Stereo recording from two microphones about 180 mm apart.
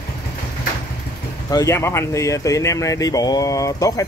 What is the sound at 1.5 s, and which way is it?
Speech, 15° left (ahead or behind).